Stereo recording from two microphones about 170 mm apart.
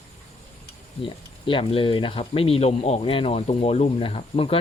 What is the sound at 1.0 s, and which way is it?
Speech, 30° left (ahead or behind).